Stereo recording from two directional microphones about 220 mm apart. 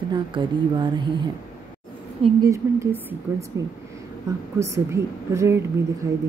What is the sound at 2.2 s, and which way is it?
A woman's voice, 15° right (ahead or behind).